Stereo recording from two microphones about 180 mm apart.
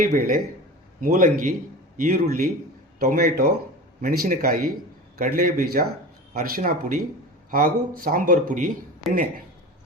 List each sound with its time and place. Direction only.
0.0 s a man's voice: 50° right (ahead or behind)